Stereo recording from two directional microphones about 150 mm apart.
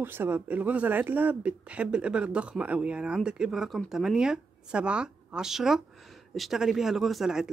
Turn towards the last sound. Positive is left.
turn(degrees=-5)  # may be behind; listen again after turning